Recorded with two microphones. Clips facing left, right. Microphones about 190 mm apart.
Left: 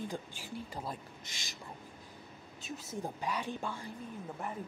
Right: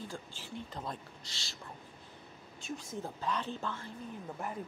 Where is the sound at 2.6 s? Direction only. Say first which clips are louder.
Even; 5° left (ahead or behind).